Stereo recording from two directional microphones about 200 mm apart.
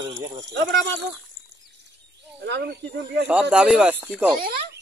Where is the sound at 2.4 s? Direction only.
55° right (ahead or behind).